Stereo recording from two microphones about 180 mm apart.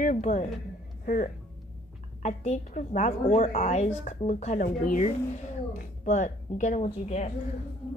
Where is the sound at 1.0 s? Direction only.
45° left (ahead or behind).